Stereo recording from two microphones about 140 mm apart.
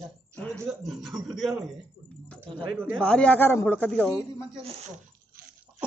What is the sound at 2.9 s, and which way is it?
Speech, 5° left (ahead or behind).